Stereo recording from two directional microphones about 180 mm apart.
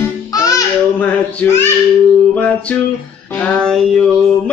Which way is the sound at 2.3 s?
10° left (ahead or behind).